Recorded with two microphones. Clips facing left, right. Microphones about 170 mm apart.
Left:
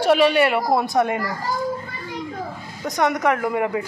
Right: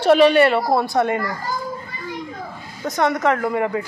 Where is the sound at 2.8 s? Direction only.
15° left (ahead or behind).